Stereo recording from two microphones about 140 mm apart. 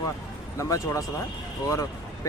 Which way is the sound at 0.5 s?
25° left (ahead or behind).